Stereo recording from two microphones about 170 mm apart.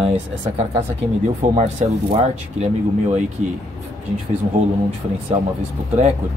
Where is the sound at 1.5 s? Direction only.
40° right (ahead or behind).